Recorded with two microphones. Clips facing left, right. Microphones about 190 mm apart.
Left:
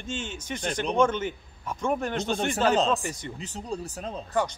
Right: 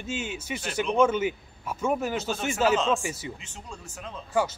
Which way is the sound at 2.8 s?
35° left (ahead or behind).